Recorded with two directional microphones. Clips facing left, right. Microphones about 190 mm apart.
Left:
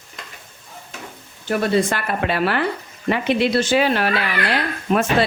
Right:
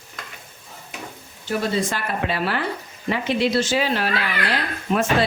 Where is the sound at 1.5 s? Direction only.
65° left (ahead or behind).